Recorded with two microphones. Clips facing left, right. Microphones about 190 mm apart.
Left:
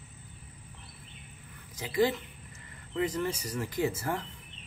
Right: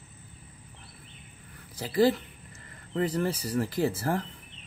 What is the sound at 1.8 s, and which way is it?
Speech, 35° right (ahead or behind).